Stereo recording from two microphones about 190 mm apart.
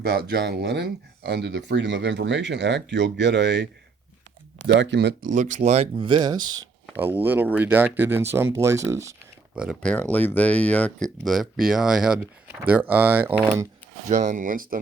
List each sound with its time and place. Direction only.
0.0 s speech: 55° right (ahead or behind)
5.3 s speech: 40° right (ahead or behind); by 6.6 s 20° right (ahead or behind)
7.2 s speech: 10° right (ahead or behind)
9.6 s speech: 5° right (ahead or behind)
9.9 s speech: 10° left (ahead or behind)
14.1 s speech: 40° right (ahead or behind)